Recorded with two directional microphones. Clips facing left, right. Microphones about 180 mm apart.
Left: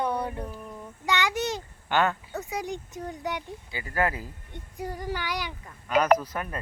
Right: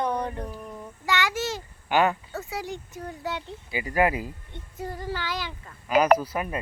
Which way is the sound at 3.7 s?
15° right (ahead or behind).